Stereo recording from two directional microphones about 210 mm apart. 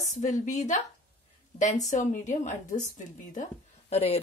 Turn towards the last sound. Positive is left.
turn(degrees=30)  # may be behind; listen again after turning